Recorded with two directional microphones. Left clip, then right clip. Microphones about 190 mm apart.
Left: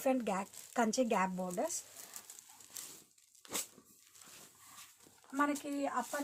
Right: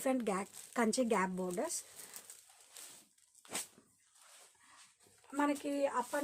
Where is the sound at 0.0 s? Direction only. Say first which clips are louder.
Left 1 dB; 25° right (ahead or behind).